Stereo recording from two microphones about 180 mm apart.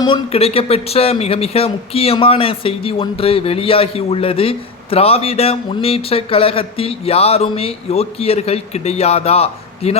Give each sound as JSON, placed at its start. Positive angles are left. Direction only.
{"t": 0.0, "sound": "speech", "side_deg": 30}